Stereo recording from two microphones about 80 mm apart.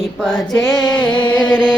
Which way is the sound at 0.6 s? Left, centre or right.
Left.